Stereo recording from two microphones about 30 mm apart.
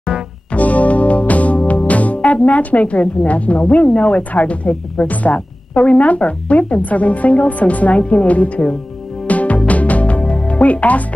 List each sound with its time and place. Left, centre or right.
0.5 s music: left
2.3 s speech: left
5.0 s speech: left
9.3 s music: left
10.6 s speech: left